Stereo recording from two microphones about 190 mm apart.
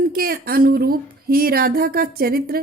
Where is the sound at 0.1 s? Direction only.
50° right (ahead or behind).